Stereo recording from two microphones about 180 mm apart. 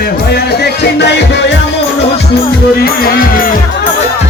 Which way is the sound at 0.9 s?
70° left (ahead or behind).